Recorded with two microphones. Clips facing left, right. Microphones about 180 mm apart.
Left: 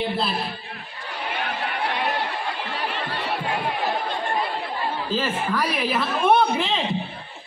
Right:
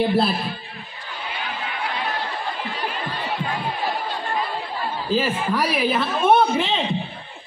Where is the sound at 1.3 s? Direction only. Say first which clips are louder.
Left 3 dB; 65° left (ahead or behind).